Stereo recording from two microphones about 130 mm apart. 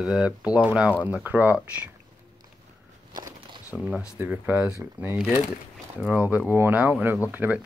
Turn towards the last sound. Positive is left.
turn(degrees=-15)  # may be behind; listen again after turning